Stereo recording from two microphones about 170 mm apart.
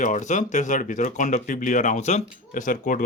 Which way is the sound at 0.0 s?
45° left (ahead or behind).